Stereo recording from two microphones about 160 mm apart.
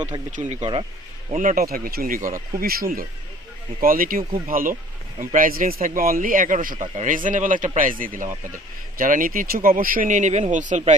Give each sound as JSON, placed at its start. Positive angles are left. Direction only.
{"t": 0.3, "sound": "speech", "side_deg": -50}
{"t": 1.4, "sound": "speech", "side_deg": -60}